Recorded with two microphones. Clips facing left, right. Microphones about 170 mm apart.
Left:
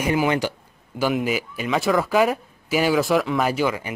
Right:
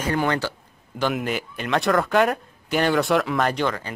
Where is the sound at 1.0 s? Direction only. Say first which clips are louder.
Left 2 dB; 5° left (ahead or behind).